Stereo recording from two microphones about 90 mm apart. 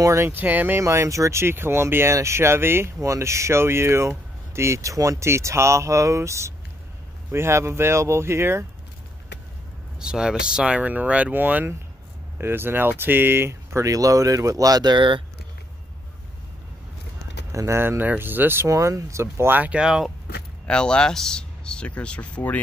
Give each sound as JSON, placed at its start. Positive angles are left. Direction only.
{"t": 0.0, "sound": "speech", "side_deg": -30}
{"t": 0.7, "sound": "speech", "side_deg": -30}
{"t": 9.9, "sound": "speech", "side_deg": -10}
{"t": 17.5, "sound": "speech", "side_deg": -35}
{"t": 20.6, "sound": "speech", "side_deg": 10}